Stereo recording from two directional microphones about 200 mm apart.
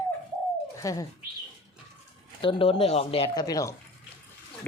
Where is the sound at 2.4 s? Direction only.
25° left (ahead or behind).